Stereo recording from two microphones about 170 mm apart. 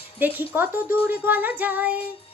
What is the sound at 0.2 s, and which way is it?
Speech, 10° right (ahead or behind).